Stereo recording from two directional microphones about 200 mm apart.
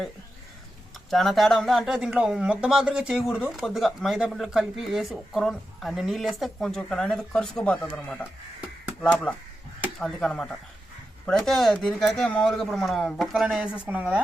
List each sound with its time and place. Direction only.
1.1 s speech: centre (ahead or behind)